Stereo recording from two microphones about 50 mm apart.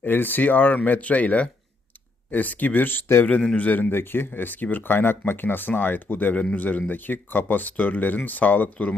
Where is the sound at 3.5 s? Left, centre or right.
Left.